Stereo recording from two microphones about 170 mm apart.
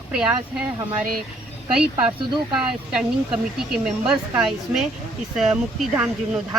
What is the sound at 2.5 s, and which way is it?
Speech, 5° right (ahead or behind).